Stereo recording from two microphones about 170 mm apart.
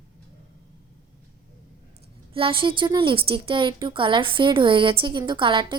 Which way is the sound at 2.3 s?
35° right (ahead or behind).